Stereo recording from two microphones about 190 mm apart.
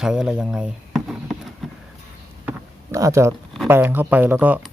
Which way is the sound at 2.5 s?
15° right (ahead or behind).